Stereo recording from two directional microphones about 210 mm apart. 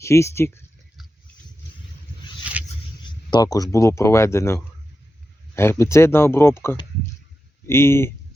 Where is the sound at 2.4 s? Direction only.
5° right (ahead or behind).